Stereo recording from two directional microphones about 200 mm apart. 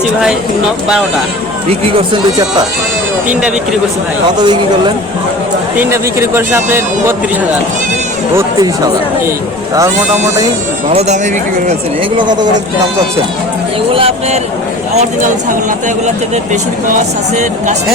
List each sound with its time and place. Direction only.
4.4 s speech: 20° right (ahead or behind)
5.8 s speech: 10° right (ahead or behind)
8.4 s speech: 20° right (ahead or behind)
12.1 s speech: 20° right (ahead or behind)
13.9 s speech: 25° right (ahead or behind)